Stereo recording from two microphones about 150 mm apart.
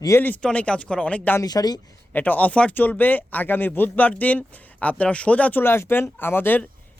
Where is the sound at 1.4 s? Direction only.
25° left (ahead or behind).